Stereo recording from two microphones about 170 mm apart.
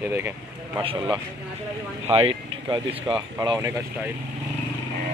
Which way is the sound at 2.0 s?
35° right (ahead or behind).